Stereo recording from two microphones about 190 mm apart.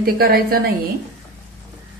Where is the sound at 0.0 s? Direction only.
55° right (ahead or behind).